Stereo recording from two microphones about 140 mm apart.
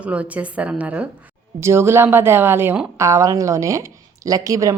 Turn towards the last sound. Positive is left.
turn(degrees=-20)  # may be behind; listen again after turning